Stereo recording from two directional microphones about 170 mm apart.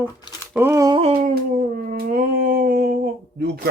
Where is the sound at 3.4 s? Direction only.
65° right (ahead or behind).